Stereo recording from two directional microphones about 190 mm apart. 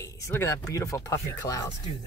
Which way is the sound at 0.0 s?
15° left (ahead or behind).